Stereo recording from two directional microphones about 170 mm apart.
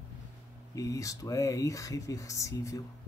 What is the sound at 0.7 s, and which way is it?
Speech, 20° left (ahead or behind).